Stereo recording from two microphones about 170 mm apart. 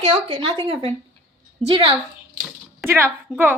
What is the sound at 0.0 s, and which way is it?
A woman's voice, 30° right (ahead or behind).